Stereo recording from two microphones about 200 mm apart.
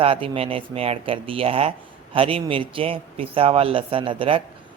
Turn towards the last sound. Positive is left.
turn(degrees=-25)  # may be behind; listen again after turning